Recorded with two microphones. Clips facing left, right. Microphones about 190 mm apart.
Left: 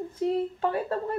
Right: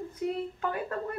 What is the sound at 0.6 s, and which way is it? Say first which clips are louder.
Speech: left 5 dB; 30° left (ahead or behind).